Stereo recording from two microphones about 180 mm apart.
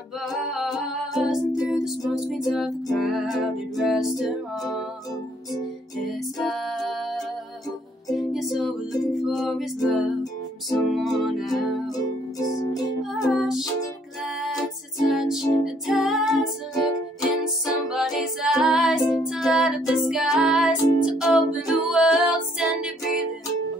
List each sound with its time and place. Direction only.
0.3 s music: centre (ahead or behind)
6.0 s music: centre (ahead or behind)
12.0 s music: 20° left (ahead or behind)
13.1 s music: centre (ahead or behind)
15.0 s music: centre (ahead or behind)